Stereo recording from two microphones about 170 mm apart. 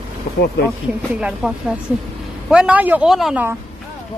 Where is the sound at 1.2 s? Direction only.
5° right (ahead or behind).